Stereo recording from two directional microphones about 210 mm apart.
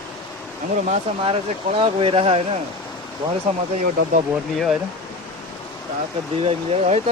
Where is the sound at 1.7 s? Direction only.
25° right (ahead or behind).